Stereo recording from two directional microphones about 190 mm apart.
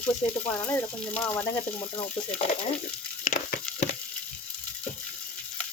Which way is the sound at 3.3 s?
40° left (ahead or behind).